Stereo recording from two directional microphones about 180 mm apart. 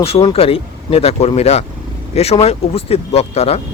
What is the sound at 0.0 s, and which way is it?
Speech, 35° left (ahead or behind).